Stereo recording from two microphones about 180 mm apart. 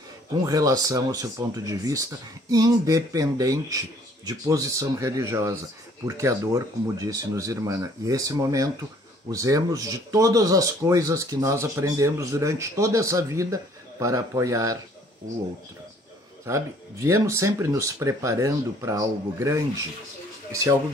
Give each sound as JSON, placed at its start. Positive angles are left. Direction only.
{"t": 0.4, "sound": "speech", "side_deg": -20}
{"t": 16.4, "sound": "speech", "side_deg": -15}